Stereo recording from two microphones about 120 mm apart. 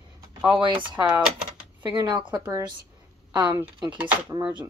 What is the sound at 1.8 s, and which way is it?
Speech, 40° right (ahead or behind).